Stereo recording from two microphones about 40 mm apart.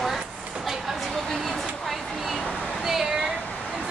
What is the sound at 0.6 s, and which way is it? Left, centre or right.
Vehicle, centre.